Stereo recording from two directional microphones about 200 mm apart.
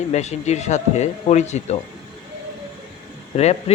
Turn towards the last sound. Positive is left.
turn(degrees=30)  # may be behind; listen again after turning